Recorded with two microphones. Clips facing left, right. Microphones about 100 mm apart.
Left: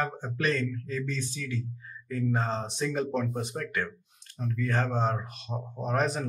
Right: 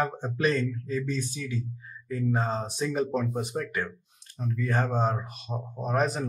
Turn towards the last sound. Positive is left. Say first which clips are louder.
# right 1 dB
turn(degrees=-5)  # may be behind; listen again after turning